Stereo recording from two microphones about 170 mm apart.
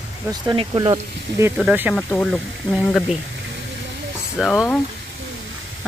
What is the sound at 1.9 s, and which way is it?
Speech, 5° left (ahead or behind).